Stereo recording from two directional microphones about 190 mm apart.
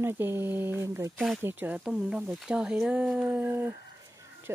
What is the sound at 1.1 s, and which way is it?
Speech, centre (ahead or behind).